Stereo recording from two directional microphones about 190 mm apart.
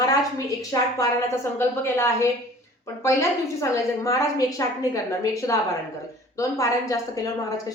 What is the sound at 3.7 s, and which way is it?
Speech, 15° left (ahead or behind).